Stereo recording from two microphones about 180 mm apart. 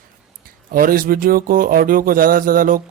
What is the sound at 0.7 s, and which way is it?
Speech, 50° right (ahead or behind).